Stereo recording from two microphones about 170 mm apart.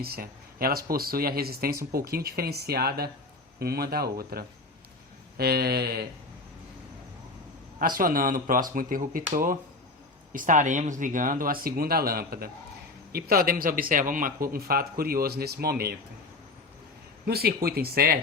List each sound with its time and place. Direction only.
0.0 s speech: 60° right (ahead or behind)
7.8 s speech: 55° right (ahead or behind)
17.2 s speech: 65° right (ahead or behind)